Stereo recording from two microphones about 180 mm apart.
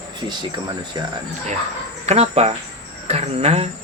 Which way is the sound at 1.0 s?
20° right (ahead or behind).